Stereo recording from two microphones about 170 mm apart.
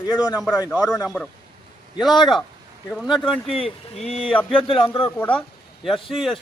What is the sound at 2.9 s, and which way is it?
Speech, centre (ahead or behind).